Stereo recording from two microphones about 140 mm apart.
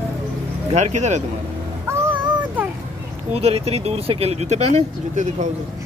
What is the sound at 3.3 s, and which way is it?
Speech, 45° right (ahead or behind).